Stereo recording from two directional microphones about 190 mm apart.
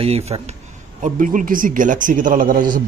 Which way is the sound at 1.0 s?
45° right (ahead or behind).